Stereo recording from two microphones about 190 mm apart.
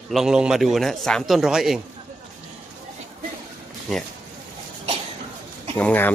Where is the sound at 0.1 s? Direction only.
5° right (ahead or behind).